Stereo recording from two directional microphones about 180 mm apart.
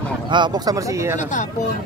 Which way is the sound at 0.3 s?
25° right (ahead or behind).